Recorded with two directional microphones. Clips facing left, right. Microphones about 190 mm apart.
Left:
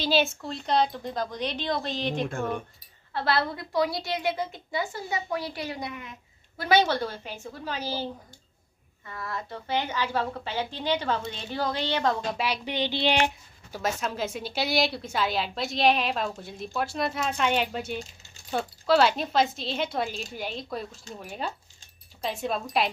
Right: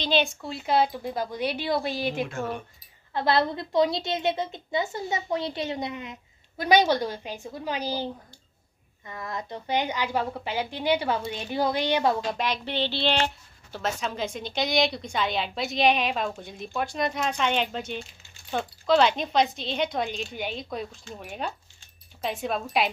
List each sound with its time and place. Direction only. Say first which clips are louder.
0.0 s a woman's voice: even; 5° left (ahead or behind)
3.1 s a woman's voice: right 3 dB; 20° right (ahead or behind)
12.3 s speech: right 1 dB; 10° left (ahead or behind)